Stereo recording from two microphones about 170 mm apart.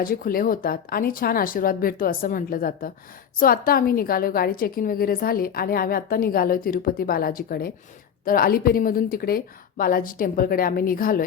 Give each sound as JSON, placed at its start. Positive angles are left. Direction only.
{"t": 0.0, "sound": "a woman's voice", "side_deg": 60}